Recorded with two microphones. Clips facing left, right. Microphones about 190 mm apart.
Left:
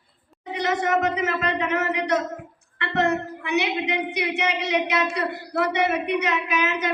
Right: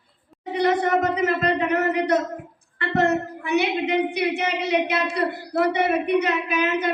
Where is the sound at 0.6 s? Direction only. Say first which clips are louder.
Right 2 dB; 35° right (ahead or behind).